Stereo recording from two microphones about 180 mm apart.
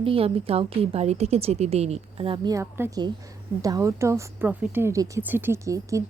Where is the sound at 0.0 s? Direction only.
30° right (ahead or behind).